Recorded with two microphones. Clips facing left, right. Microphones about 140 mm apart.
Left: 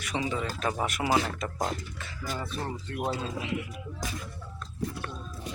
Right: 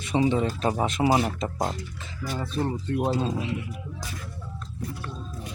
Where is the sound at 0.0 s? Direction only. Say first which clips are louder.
Right 8 dB; 25° right (ahead or behind).